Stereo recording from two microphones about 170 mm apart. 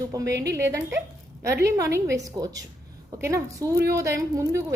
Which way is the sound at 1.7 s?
15° right (ahead or behind).